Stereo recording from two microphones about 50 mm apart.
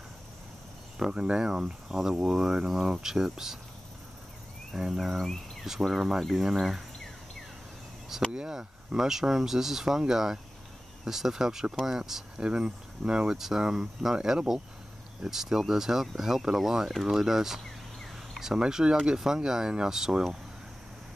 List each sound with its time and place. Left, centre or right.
0.9 s speech: centre
4.7 s speech: centre
8.3 s speech: centre